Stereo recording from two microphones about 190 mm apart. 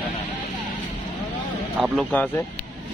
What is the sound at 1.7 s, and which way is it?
Speech, 5° right (ahead or behind).